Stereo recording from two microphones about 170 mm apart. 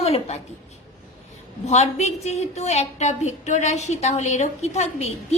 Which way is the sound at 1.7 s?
40° left (ahead or behind).